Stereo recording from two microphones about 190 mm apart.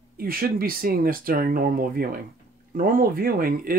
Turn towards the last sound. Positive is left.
turn(degrees=-50)  # may be behind; listen again after turning